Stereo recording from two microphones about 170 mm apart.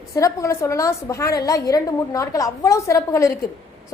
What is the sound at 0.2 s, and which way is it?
A woman's voice, 20° left (ahead or behind).